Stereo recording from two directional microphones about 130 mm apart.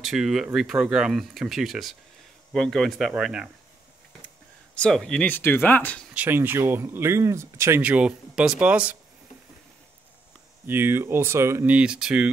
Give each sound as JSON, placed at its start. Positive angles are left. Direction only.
{"t": 0.0, "sound": "speech", "side_deg": 0}
{"t": 4.7, "sound": "speech", "side_deg": 5}
{"t": 6.1, "sound": "speech", "side_deg": -15}
{"t": 7.8, "sound": "speech", "side_deg": -10}
{"t": 10.7, "sound": "speech", "side_deg": -15}